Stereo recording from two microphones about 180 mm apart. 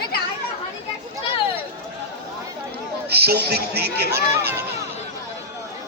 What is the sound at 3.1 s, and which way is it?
Speech, 60° right (ahead or behind).